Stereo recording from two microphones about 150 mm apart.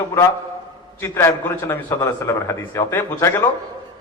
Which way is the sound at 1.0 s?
15° left (ahead or behind).